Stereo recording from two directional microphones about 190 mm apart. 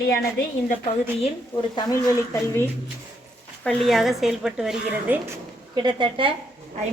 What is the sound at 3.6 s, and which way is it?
A woman's voice, 5° left (ahead or behind).